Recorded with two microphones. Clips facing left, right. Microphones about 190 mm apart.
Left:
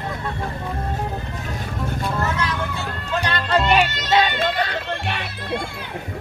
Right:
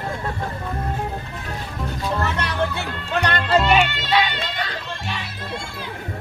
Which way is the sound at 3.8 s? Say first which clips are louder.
Left 2 dB; 40° left (ahead or behind).